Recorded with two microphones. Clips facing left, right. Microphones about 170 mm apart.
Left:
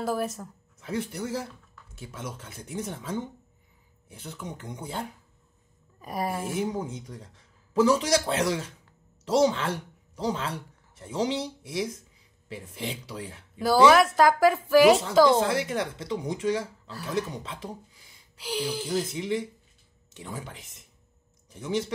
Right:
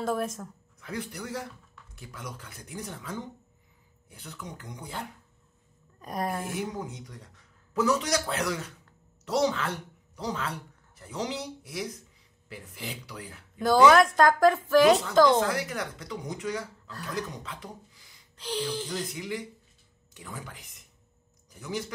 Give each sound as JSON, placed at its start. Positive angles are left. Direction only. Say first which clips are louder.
{"t": 0.0, "sound": "a woman's voice", "louder": "left 1 dB", "side_deg": 5}
{"t": 0.7, "sound": "a man's voice", "louder": "left 5 dB", "side_deg": 25}
{"t": 5.9, "sound": "a woman's voice", "louder": "left 1 dB", "side_deg": 5}
{"t": 6.6, "sound": "a man's voice", "louder": "left 4 dB", "side_deg": 30}
{"t": 13.6, "sound": "a woman's voice", "louder": "even", "side_deg": 5}
{"t": 15.3, "sound": "a man's voice", "louder": "left 2 dB", "side_deg": 25}
{"t": 18.3, "sound": "speech", "louder": "left 1 dB", "side_deg": 10}
{"t": 19.1, "sound": "a man's voice", "louder": "left 6 dB", "side_deg": 25}